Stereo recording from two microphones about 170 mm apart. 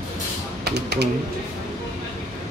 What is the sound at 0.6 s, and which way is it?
Speech, 75° right (ahead or behind).